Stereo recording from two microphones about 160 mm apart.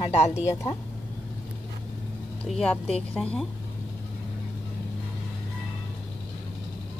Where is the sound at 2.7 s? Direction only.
40° left (ahead or behind).